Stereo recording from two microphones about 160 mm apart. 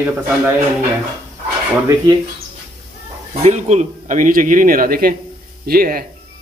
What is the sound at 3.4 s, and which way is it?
Speech, 45° right (ahead or behind).